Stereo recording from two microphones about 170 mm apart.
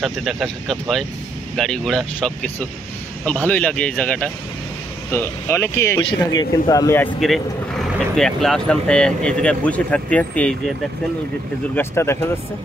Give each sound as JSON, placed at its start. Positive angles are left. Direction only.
{"t": 0.0, "sound": "speech", "side_deg": 0}
{"t": 5.9, "sound": "speech", "side_deg": 25}
{"t": 7.2, "sound": "speech", "side_deg": 0}
{"t": 11.7, "sound": "speech", "side_deg": 15}